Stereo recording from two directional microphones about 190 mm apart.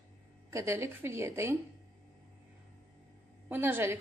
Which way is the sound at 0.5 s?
15° right (ahead or behind).